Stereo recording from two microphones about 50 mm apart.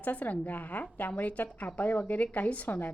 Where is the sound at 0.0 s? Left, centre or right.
Left.